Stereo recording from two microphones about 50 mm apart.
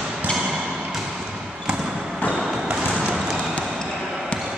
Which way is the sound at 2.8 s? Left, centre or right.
Right.